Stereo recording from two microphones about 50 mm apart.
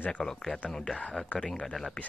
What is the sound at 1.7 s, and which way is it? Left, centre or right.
Speech, centre.